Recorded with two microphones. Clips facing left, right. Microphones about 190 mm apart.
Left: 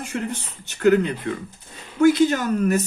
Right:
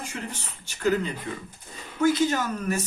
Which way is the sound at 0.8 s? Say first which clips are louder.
Left 7 dB; 65° left (ahead or behind).